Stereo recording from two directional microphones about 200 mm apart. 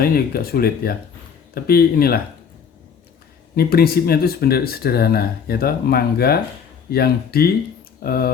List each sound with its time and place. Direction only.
0.0 s speech: 50° left (ahead or behind)
3.5 s speech: 50° left (ahead or behind)